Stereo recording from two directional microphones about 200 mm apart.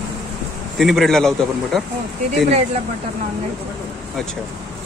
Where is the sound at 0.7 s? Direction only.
Centre (ahead or behind).